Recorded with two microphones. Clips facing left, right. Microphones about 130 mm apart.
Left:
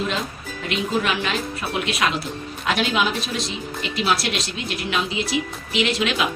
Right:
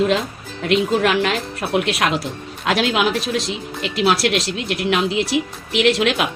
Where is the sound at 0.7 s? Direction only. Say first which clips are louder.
Right 6 dB; 75° right (ahead or behind).